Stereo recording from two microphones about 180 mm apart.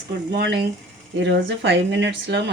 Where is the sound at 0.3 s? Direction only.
70° right (ahead or behind).